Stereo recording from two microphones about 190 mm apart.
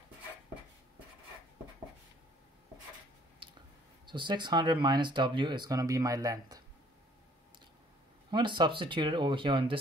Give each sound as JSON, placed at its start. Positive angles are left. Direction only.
{"t": 4.0, "sound": "speech", "side_deg": -25}
{"t": 8.3, "sound": "speech", "side_deg": -25}